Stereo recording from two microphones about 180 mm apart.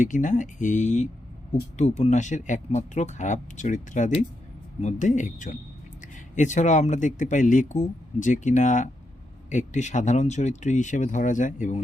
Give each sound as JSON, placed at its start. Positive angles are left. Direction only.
{"t": 0.0, "sound": "speech", "side_deg": 45}